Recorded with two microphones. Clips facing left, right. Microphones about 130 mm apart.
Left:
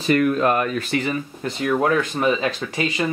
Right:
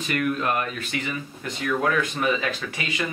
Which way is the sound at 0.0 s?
35° left (ahead or behind).